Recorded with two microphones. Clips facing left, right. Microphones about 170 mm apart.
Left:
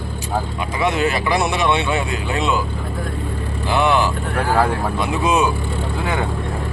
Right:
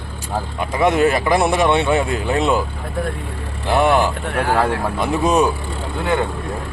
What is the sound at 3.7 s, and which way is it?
Speech, 45° right (ahead or behind).